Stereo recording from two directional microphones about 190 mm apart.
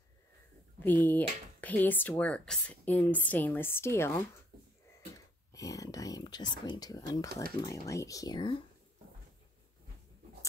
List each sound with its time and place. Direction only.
0.7 s a woman's voice: 10° left (ahead or behind)